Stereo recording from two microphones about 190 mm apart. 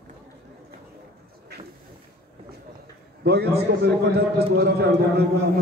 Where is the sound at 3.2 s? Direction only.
60° right (ahead or behind).